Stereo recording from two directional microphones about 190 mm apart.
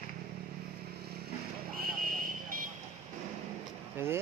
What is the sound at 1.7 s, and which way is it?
Vehicle, 50° right (ahead or behind).